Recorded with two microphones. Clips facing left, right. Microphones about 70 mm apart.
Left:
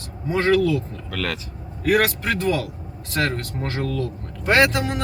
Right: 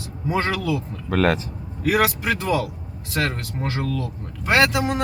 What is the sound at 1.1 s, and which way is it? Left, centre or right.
Speech, right.